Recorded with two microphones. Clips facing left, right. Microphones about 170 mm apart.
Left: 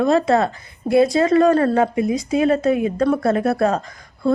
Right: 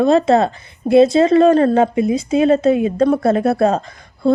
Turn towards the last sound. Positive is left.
turn(degrees=-25)  # may be behind; listen again after turning